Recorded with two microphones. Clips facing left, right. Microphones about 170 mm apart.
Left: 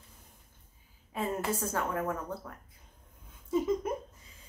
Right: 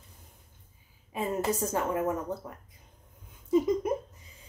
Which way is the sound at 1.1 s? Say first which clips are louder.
Right 3 dB; 20° right (ahead or behind).